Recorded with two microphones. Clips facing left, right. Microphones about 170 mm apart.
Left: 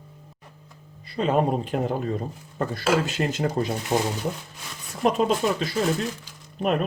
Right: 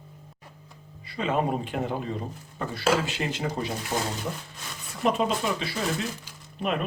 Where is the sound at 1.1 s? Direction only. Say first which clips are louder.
Left 4 dB; 40° left (ahead or behind).